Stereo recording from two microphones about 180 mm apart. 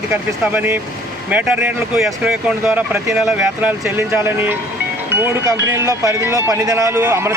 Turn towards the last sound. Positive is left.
turn(degrees=-15)  # may be behind; listen again after turning